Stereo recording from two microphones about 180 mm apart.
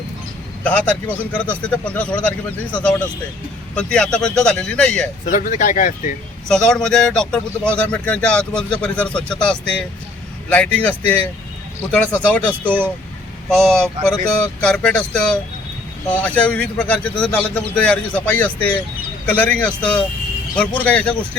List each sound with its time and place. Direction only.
0.6 s a man's voice: 5° left (ahead or behind)
3.8 s speech: 5° left (ahead or behind)
5.2 s speech: 45° left (ahead or behind)
6.5 s a man's voice: 5° left (ahead or behind)
12.6 s speech: 10° right (ahead or behind)
13.5 s a man's voice: 5° left (ahead or behind)